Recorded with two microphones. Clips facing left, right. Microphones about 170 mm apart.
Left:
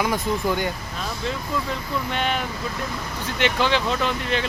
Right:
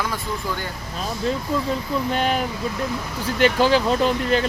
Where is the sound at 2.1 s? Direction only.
40° right (ahead or behind).